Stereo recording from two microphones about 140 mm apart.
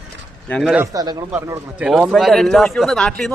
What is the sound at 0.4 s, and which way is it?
Speech, 10° left (ahead or behind).